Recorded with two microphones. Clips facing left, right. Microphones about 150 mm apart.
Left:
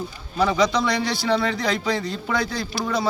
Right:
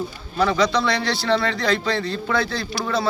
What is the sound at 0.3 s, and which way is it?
A man's voice, 15° left (ahead or behind).